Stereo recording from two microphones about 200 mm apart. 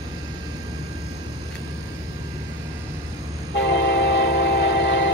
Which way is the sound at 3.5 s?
65° left (ahead or behind).